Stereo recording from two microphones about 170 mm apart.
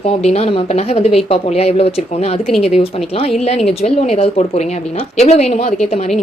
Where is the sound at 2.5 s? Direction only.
Centre (ahead or behind).